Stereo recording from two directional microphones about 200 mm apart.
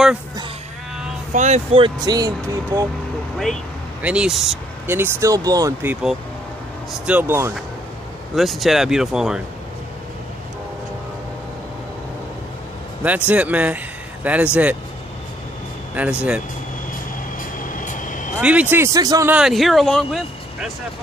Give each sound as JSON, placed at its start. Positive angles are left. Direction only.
{"t": 1.3, "sound": "speech", "side_deg": -35}
{"t": 4.0, "sound": "speech", "side_deg": -5}
{"t": 8.4, "sound": "speech", "side_deg": 0}
{"t": 13.3, "sound": "speech", "side_deg": -5}
{"t": 15.9, "sound": "speech", "side_deg": -5}
{"t": 17.4, "sound": "vehicle", "side_deg": 40}
{"t": 18.4, "sound": "speech", "side_deg": -5}
{"t": 19.3, "sound": "speech", "side_deg": 0}